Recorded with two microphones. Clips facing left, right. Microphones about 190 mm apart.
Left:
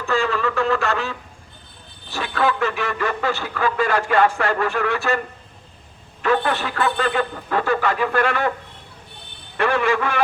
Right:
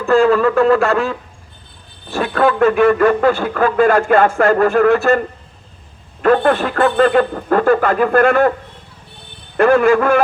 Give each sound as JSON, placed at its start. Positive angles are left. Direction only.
{"t": 0.0, "sound": "a man's voice", "side_deg": -50}
{"t": 6.2, "sound": "a man's voice", "side_deg": -50}
{"t": 9.6, "sound": "a man's voice", "side_deg": -45}